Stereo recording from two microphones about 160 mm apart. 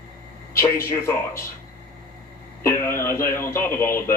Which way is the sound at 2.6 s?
15° left (ahead or behind).